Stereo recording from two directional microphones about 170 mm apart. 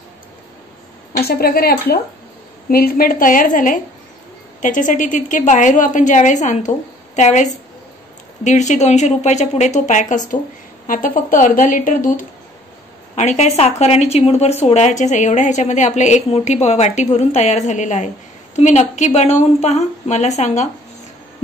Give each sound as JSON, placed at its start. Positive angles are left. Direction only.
{"t": 1.1, "sound": "a woman's voice", "side_deg": 65}